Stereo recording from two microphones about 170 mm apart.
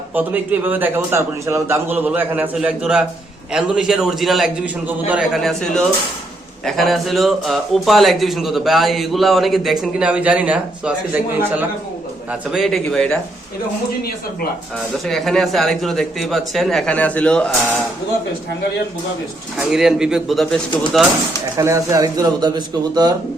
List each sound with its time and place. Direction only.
0.1 s a man's voice: 10° right (ahead or behind)
15.0 s speech: centre (ahead or behind)
19.5 s speech: 5° right (ahead or behind)
21.6 s a man's voice: 20° right (ahead or behind)